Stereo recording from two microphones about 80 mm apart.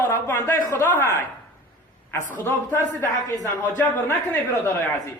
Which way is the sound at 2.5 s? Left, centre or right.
Left.